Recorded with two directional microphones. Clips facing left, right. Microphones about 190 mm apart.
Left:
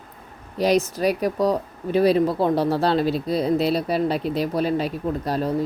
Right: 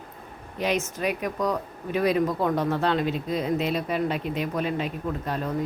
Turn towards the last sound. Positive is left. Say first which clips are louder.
# left 5 dB
turn(degrees=35)  # may be behind; listen again after turning